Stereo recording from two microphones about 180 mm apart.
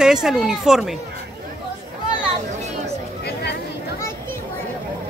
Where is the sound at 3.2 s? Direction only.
65° left (ahead or behind).